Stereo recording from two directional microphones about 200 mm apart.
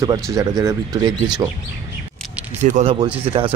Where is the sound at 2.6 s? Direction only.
35° right (ahead or behind).